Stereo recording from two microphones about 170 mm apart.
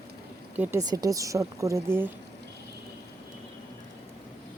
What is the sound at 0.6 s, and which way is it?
A woman's voice, 20° right (ahead or behind).